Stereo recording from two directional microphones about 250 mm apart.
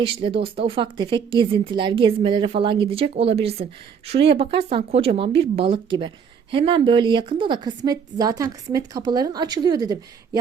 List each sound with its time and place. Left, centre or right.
0.0 s speech: right